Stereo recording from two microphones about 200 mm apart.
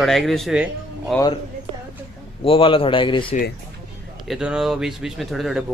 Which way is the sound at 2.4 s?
25° left (ahead or behind).